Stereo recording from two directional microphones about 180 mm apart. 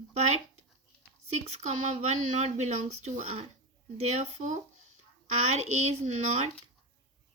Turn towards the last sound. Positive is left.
turn(degrees=-40)  # may be behind; listen again after turning